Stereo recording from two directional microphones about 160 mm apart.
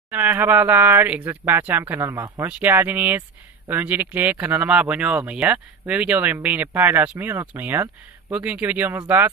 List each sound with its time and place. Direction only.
0.1 s speech: 10° right (ahead or behind)